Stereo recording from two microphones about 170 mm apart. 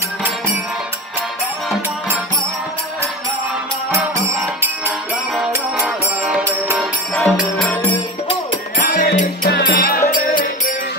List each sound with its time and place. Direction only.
5.5 s music: 10° right (ahead or behind)
7.2 s music: 5° left (ahead or behind)
8.7 s music: 55° left (ahead or behind)
9.5 s music: 75° left (ahead or behind)